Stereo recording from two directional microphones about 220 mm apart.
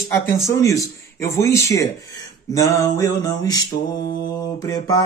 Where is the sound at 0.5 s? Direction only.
15° left (ahead or behind).